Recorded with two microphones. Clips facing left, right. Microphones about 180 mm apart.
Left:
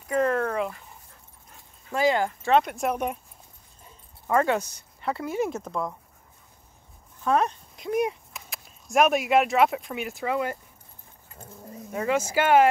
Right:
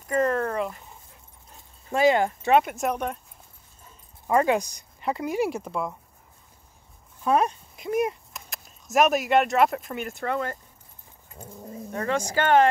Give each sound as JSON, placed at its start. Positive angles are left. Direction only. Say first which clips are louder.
{"t": 0.0, "sound": "dog", "louder": "even", "side_deg": 0}
{"t": 1.9, "sound": "speech", "louder": "right 3 dB", "side_deg": -25}
{"t": 2.5, "sound": "speech", "louder": "right 1 dB", "side_deg": -5}
{"t": 4.3, "sound": "speech", "louder": "right 1 dB", "side_deg": -15}
{"t": 7.2, "sound": "speech", "louder": "right 1 dB", "side_deg": -10}
{"t": 11.9, "sound": "speech", "louder": "left 2 dB", "side_deg": 5}